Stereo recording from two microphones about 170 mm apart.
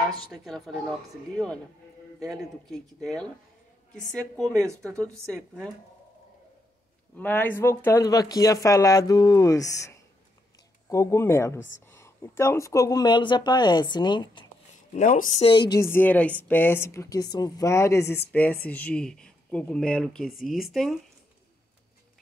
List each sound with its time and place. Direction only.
0.3 s speech: centre (ahead or behind)
2.2 s speech: centre (ahead or behind)
4.8 s speech: 5° left (ahead or behind)
7.2 s speech: 10° left (ahead or behind); by 14.4 s 25° left (ahead or behind)
15.0 s speech: 50° left (ahead or behind)
15.3 s speech: 30° left (ahead or behind); by 21.0 s centre (ahead or behind)